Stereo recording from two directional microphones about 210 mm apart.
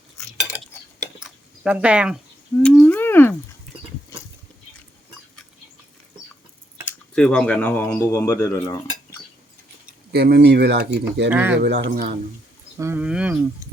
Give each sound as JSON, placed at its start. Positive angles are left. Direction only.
{"t": 0.2, "sound": "cutlery", "side_deg": 5}
{"t": 0.5, "sound": "cutlery", "side_deg": -5}
{"t": 1.2, "sound": "a sound", "side_deg": -5}
{"t": 2.6, "sound": "a sound", "side_deg": 5}
{"t": 6.8, "sound": "speech", "side_deg": 5}
{"t": 10.1, "sound": "speech", "side_deg": -50}
{"t": 11.3, "sound": "speech", "side_deg": -5}
{"t": 11.8, "sound": "speech", "side_deg": -45}
{"t": 12.8, "sound": "speech", "side_deg": -10}